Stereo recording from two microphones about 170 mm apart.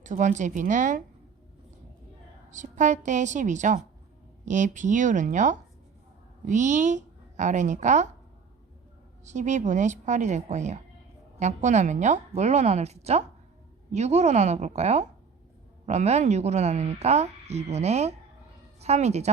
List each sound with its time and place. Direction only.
0.0 s a woman's voice: 45° right (ahead or behind)
2.5 s a woman's voice: 45° right (ahead or behind)
9.2 s a woman's voice: 45° right (ahead or behind)